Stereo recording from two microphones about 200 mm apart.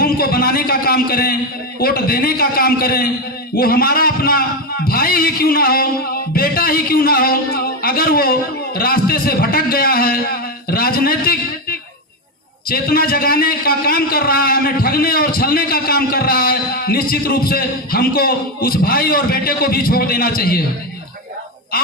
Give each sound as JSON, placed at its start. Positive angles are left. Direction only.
{"t": 0.0, "sound": "a man's voice", "side_deg": 50}